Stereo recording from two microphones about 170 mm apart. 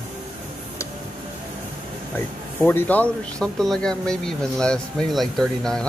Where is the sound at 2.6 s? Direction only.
10° left (ahead or behind).